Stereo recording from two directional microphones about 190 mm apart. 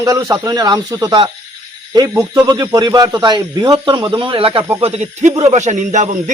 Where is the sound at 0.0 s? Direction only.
15° right (ahead or behind).